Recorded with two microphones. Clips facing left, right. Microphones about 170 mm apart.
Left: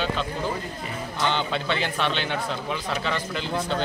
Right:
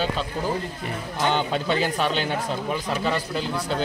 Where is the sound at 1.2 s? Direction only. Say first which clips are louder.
Right 3 dB; 45° right (ahead or behind).